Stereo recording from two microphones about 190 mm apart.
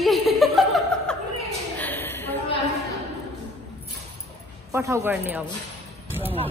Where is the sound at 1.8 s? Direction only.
10° left (ahead or behind).